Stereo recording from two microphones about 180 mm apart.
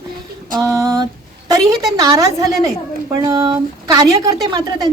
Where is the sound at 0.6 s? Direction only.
20° right (ahead or behind).